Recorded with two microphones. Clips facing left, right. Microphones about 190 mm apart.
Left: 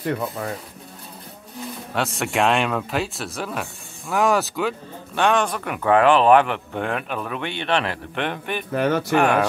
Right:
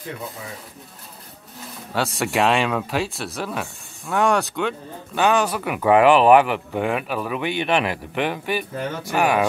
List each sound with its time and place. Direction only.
0.4 s speech: 65° left (ahead or behind)
2.0 s speech: centre (ahead or behind)
8.7 s speech: 75° left (ahead or behind)
9.1 s speech: 5° right (ahead or behind)